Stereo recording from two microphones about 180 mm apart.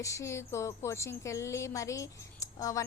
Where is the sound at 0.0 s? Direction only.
15° left (ahead or behind).